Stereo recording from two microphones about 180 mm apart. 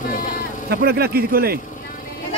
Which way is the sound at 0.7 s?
60° right (ahead or behind).